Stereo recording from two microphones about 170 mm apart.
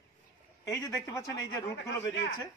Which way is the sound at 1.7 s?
90° left.